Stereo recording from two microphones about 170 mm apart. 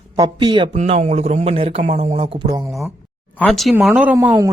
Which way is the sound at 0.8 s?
40° right (ahead or behind).